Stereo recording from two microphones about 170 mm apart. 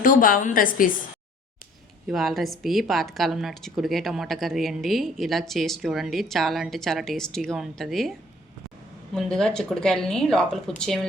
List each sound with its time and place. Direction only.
0.0 s a woman's voice: 55° left (ahead or behind)
2.0 s a woman's voice: centre (ahead or behind)
9.1 s a woman's voice: 5° left (ahead or behind)